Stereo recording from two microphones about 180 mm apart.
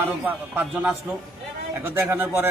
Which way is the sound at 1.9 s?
10° right (ahead or behind).